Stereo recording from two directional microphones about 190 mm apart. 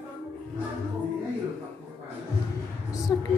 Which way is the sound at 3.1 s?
20° left (ahead or behind).